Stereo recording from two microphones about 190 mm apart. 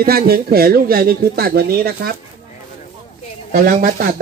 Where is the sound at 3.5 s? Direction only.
45° right (ahead or behind).